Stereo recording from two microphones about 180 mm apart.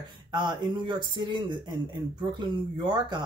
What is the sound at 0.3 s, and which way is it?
Speech, 25° right (ahead or behind).